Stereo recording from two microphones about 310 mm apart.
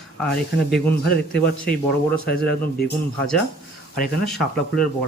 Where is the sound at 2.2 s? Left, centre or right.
Left.